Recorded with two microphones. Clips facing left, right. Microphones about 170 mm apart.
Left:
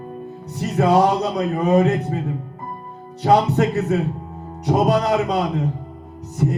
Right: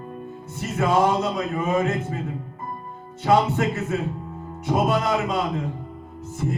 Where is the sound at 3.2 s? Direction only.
40° left (ahead or behind).